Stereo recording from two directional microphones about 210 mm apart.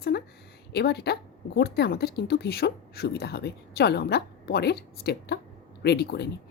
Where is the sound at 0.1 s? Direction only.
50° left (ahead or behind).